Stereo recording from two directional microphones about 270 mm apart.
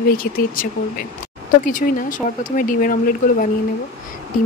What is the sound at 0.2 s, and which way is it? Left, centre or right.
Speech, left.